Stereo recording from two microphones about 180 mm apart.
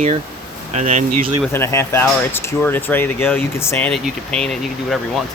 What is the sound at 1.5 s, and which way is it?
Speech, 15° left (ahead or behind).